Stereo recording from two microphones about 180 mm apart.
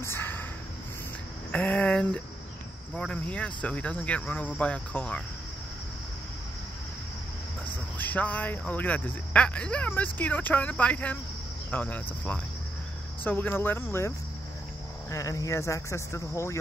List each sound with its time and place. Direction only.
0.0 s a sound: 10° left (ahead or behind)
1.5 s speech: 10° left (ahead or behind)
8.0 s speech: 10° left (ahead or behind)